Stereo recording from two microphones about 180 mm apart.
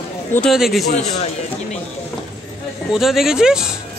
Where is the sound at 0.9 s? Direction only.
40° left (ahead or behind).